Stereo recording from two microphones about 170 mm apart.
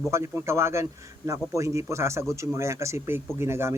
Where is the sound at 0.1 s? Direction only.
15° right (ahead or behind).